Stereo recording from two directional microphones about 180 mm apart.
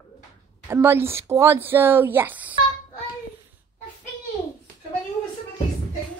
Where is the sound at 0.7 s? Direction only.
15° right (ahead or behind).